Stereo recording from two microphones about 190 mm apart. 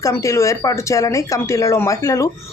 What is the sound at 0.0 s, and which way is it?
Speech, 15° left (ahead or behind).